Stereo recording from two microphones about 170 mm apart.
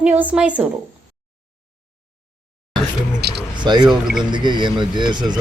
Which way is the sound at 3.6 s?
25° right (ahead or behind).